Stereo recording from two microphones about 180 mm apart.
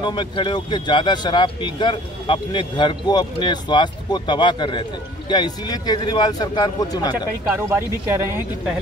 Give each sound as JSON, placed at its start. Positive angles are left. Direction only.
{"t": 0.0, "sound": "speech", "side_deg": 25}
{"t": 7.5, "sound": "speech", "side_deg": -15}